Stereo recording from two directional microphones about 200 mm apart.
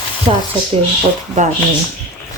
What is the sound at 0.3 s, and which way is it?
Speech, 25° right (ahead or behind).